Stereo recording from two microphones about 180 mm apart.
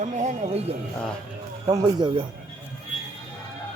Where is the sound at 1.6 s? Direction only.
25° right (ahead or behind).